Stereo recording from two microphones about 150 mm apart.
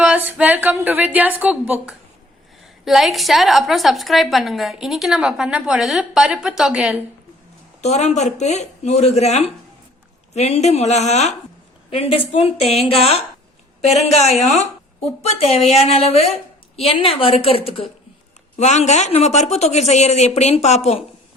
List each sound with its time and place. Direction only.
0.0 s a woman's voice: 5° right (ahead or behind)
7.8 s a woman's voice: 50° left (ahead or behind)